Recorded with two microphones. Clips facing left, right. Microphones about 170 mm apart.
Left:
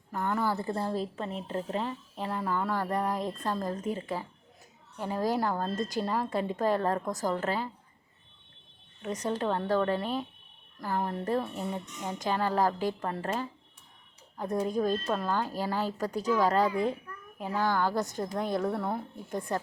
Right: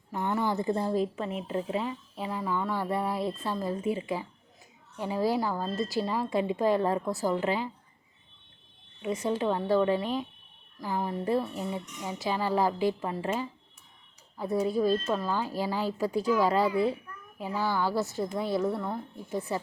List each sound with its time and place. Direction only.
0.1 s speech: 15° right (ahead or behind)
9.0 s a woman's voice: 10° right (ahead or behind)
18.8 s a woman's voice: 5° left (ahead or behind)